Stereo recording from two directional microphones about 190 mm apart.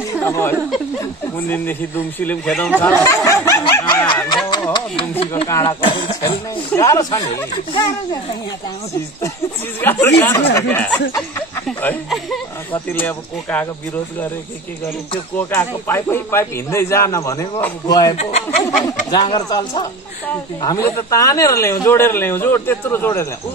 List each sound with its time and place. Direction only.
0.2 s speech: 10° left (ahead or behind)
3.3 s speech: 15° left (ahead or behind)
4.5 s a sound: 20° left (ahead or behind)
5.5 s speech: 25° left (ahead or behind)
6.5 s speech: 15° left (ahead or behind)
9.8 s speech: 10° left (ahead or behind)
15.3 s speech: 10° left (ahead or behind)
18.1 s speech: 35° left (ahead or behind)
18.6 s speech: 20° left (ahead or behind)